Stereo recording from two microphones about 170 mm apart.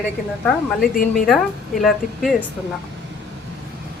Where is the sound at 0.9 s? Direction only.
55° left (ahead or behind).